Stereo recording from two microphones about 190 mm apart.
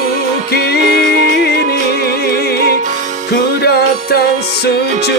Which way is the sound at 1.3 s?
60° left (ahead or behind).